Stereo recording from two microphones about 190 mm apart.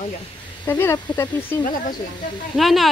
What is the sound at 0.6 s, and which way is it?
Speech, 15° left (ahead or behind).